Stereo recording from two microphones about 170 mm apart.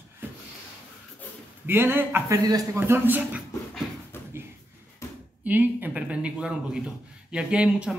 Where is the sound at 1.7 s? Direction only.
10° right (ahead or behind).